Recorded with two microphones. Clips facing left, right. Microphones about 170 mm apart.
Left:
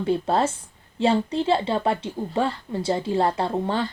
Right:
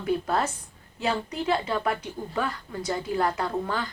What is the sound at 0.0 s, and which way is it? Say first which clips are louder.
Speech: left 4 dB; 30° left (ahead or behind).